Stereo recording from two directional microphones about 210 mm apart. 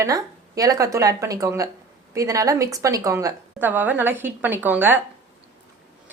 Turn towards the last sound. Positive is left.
turn(degrees=-10)  # may be behind; listen again after turning